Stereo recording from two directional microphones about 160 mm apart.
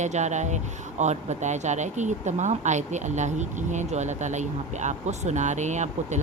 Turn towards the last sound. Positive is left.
turn(degrees=-45)  # may be behind; listen again after turning